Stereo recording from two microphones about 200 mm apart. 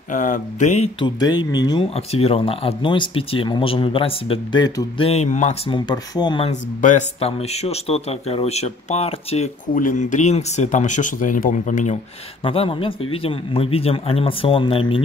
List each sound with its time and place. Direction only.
0.1 s speech: 40° left (ahead or behind)
5.7 s speech: 20° left (ahead or behind)
6.8 s speech: 35° left (ahead or behind)
12.4 s speech: 25° left (ahead or behind)